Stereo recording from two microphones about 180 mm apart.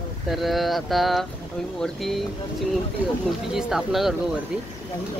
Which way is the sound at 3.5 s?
5° right (ahead or behind).